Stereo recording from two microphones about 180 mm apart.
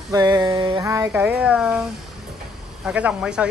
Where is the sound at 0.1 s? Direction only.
20° right (ahead or behind).